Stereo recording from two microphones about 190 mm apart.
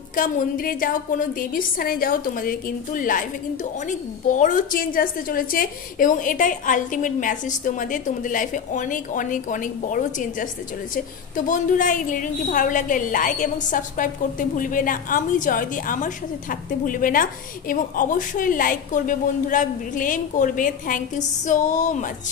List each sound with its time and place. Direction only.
0.1 s a woman's voice: 45° left (ahead or behind)